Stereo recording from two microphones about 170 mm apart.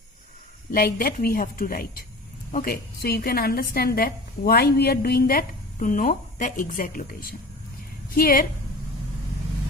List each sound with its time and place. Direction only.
0.7 s a woman's voice: 60° left (ahead or behind)